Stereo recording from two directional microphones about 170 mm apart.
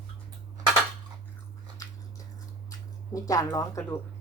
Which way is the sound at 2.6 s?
20° left (ahead or behind).